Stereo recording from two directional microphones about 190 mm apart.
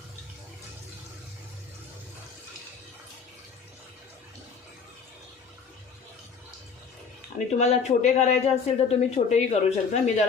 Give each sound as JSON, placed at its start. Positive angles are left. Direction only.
{"t": 7.3, "sound": "speech", "side_deg": 35}